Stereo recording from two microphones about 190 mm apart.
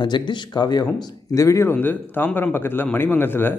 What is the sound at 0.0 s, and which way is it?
Speech, 25° left (ahead or behind).